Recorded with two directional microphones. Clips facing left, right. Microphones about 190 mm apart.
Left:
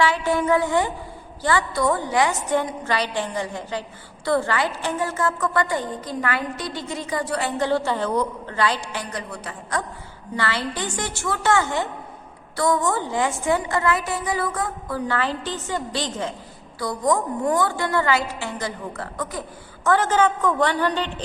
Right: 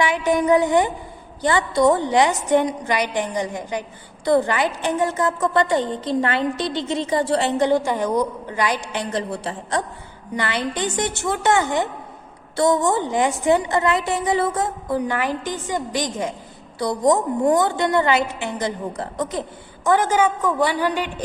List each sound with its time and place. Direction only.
0.0 s a woman's voice: 15° right (ahead or behind)